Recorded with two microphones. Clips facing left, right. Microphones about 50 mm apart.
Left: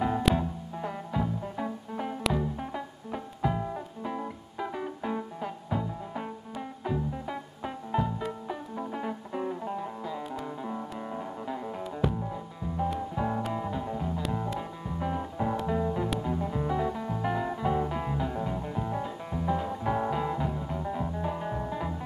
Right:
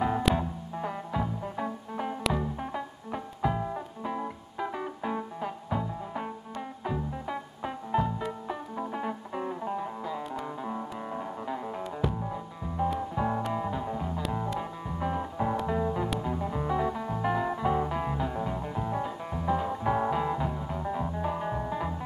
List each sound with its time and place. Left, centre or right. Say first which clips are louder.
0.0 s music: even; centre